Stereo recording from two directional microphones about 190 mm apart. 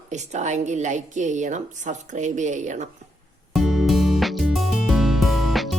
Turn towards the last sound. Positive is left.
turn(degrees=0)  # may be behind; listen again after turning